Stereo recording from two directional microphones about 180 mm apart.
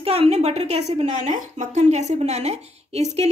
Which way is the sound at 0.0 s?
35° right (ahead or behind).